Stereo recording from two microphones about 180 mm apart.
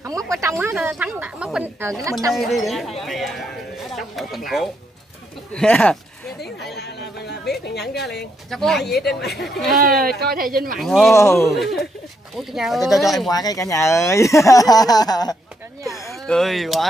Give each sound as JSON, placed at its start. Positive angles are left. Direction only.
{"t": 0.3, "sound": "speech", "side_deg": -15}
{"t": 2.3, "sound": "a sound", "side_deg": 0}
{"t": 5.5, "sound": "speech", "side_deg": 5}
{"t": 6.7, "sound": "a sound", "side_deg": 65}
{"t": 7.6, "sound": "a woman's voice", "side_deg": 65}
{"t": 8.5, "sound": "speech", "side_deg": 0}
{"t": 8.9, "sound": "speech", "side_deg": 65}
{"t": 9.4, "sound": "speech", "side_deg": 0}
{"t": 10.0, "sound": "speech", "side_deg": -55}
{"t": 10.8, "sound": "speech", "side_deg": 0}
{"t": 11.1, "sound": "speech", "side_deg": 15}
{"t": 11.5, "sound": "speech", "side_deg": 0}
{"t": 13.3, "sound": "speech", "side_deg": 20}
{"t": 16.3, "sound": "speech", "side_deg": 0}